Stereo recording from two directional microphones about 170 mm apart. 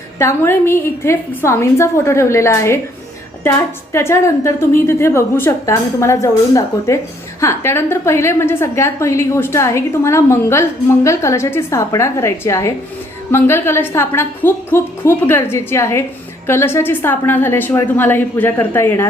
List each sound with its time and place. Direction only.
0.2 s a woman's voice: 15° left (ahead or behind)
3.9 s a woman's voice: 15° left (ahead or behind)